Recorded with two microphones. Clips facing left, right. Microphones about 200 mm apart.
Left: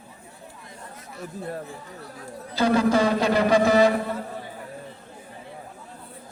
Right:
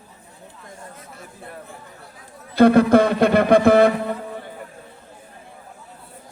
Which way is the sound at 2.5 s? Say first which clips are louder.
Right 7 dB; 55° right (ahead or behind).